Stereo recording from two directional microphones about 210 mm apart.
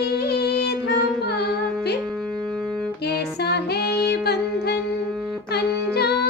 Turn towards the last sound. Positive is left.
turn(degrees=50)  # may be behind; listen again after turning